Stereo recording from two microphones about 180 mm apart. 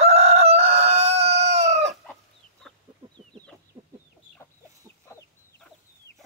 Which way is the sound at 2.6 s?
Centre (ahead or behind).